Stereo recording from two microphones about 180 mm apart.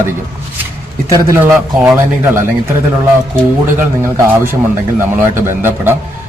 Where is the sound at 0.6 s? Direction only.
15° right (ahead or behind).